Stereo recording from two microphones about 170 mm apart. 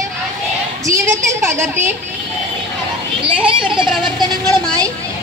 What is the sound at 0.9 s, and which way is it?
Speech, 15° right (ahead or behind).